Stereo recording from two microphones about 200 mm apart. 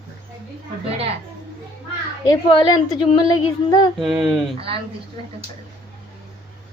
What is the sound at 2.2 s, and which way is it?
Speech, 20° left (ahead or behind).